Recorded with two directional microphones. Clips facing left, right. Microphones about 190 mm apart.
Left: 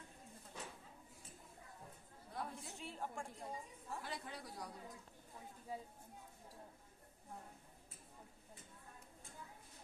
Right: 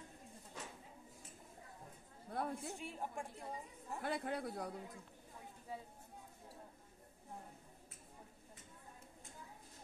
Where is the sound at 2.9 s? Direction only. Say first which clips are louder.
Left 2 dB; 15° right (ahead or behind).